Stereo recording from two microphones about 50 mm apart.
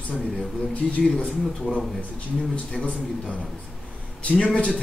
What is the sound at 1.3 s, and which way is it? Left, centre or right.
Speech, centre.